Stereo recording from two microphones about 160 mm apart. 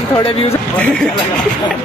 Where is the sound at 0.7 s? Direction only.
5° left (ahead or behind).